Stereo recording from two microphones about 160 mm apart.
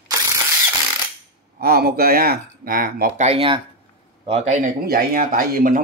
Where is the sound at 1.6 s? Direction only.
70° right (ahead or behind).